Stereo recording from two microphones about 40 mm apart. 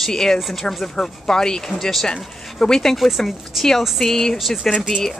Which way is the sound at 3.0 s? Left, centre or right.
Centre.